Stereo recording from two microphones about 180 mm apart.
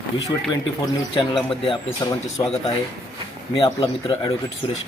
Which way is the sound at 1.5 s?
30° left (ahead or behind).